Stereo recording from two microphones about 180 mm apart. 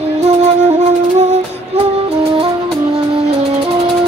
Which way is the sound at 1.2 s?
40° right (ahead or behind).